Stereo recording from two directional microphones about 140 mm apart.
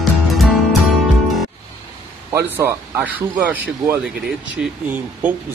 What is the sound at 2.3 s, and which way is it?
Speech, 20° right (ahead or behind).